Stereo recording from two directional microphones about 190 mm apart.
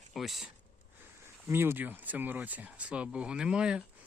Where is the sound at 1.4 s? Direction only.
10° right (ahead or behind).